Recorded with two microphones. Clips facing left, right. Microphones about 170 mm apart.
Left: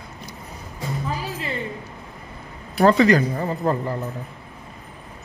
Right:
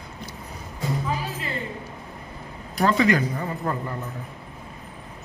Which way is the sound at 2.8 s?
40° left (ahead or behind).